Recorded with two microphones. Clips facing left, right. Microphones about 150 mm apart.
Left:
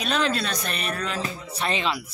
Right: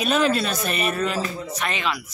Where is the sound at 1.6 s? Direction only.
30° left (ahead or behind).